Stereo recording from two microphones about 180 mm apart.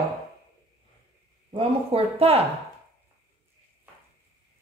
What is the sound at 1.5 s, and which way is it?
Speech, 30° right (ahead or behind).